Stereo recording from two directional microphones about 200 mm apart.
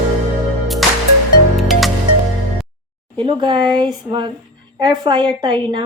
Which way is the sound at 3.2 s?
25° right (ahead or behind).